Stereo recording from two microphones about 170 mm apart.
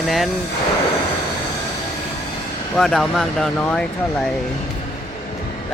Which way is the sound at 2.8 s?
Centre (ahead or behind).